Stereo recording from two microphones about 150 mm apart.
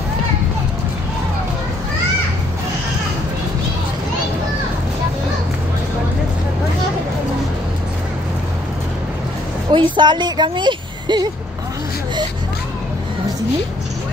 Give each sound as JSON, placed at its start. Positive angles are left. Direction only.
{"t": 9.7, "sound": "speech", "side_deg": -30}